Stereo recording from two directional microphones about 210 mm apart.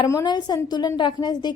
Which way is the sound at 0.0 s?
15° left (ahead or behind).